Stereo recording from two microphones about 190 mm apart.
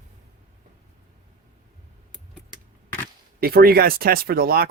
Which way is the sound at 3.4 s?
50° right (ahead or behind).